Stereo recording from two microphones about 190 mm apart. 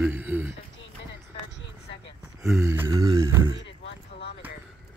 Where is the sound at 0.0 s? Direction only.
10° right (ahead or behind).